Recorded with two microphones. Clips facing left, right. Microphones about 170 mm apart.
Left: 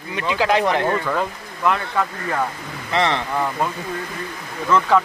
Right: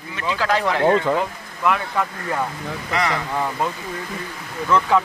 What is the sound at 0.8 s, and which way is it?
Speech, 20° right (ahead or behind).